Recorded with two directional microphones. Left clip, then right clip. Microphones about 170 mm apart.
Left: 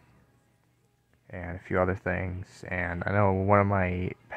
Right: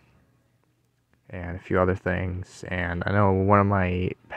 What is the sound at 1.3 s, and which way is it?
Speech, 25° right (ahead or behind).